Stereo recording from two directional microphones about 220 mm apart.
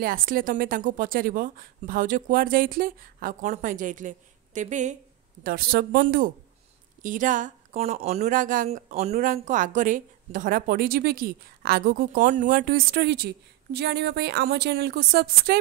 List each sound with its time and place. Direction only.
0.0 s speech: 40° right (ahead or behind)